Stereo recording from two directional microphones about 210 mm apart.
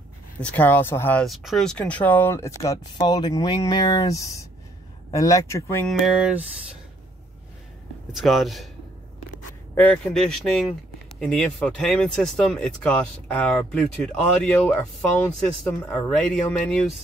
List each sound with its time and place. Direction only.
0.4 s speech: 5° left (ahead or behind)
5.9 s speech: centre (ahead or behind)
8.1 s speech: centre (ahead or behind)
9.8 s speech: 5° left (ahead or behind)
15.8 s speech: 10° left (ahead or behind)